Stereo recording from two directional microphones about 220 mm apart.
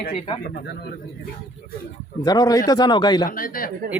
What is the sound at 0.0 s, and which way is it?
Speech, 30° left (ahead or behind).